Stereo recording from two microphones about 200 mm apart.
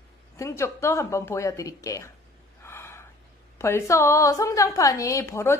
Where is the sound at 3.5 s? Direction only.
15° left (ahead or behind).